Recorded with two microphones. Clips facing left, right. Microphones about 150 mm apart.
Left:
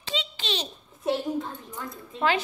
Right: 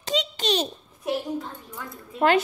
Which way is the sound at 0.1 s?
45° right (ahead or behind).